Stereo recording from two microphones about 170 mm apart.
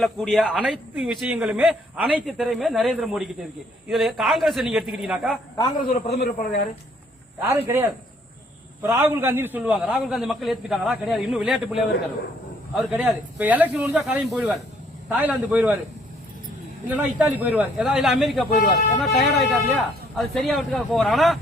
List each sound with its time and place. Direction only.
0.0 s a man's voice: centre (ahead or behind)
5.5 s a man's voice: 25° left (ahead or behind)
5.9 s a man's voice: 65° left (ahead or behind)
7.4 s speech: 15° right (ahead or behind)
8.9 s a man's voice: 15° right (ahead or behind)
16.9 s a man's voice: 10° right (ahead or behind)